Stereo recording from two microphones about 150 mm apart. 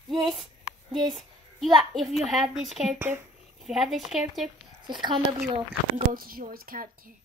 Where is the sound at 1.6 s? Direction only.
Centre (ahead or behind).